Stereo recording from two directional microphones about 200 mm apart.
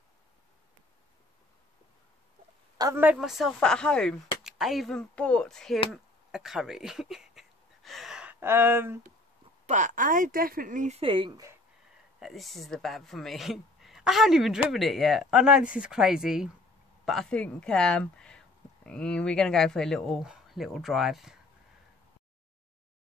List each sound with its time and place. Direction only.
2.8 s speech: 10° right (ahead or behind)
9.7 s speech: 40° right (ahead or behind); by 11.5 s 20° right (ahead or behind)
12.2 s speech: centre (ahead or behind)